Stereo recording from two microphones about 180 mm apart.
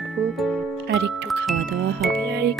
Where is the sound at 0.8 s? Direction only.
70° right (ahead or behind).